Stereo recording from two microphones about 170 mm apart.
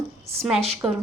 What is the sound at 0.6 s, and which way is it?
Speech, 35° right (ahead or behind).